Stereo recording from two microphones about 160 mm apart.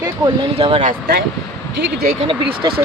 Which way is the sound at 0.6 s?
35° right (ahead or behind).